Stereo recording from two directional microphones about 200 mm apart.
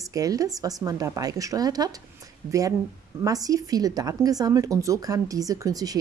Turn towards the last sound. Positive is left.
turn(degrees=-15)  # may be behind; listen again after turning